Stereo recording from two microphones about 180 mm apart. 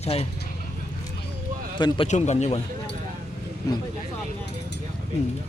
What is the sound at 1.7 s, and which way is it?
Speech, 25° left (ahead or behind).